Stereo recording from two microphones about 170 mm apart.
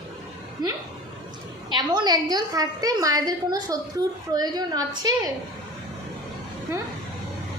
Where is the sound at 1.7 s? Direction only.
25° right (ahead or behind).